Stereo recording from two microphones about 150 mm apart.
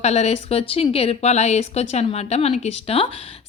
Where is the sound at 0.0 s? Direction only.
45° left (ahead or behind).